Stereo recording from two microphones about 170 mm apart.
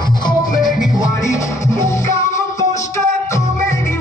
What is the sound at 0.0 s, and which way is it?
Music, 25° left (ahead or behind).